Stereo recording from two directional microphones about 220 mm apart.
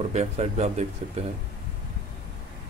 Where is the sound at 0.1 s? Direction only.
30° right (ahead or behind).